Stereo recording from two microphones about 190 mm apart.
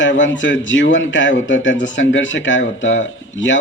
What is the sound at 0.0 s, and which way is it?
Speech, 75° left (ahead or behind).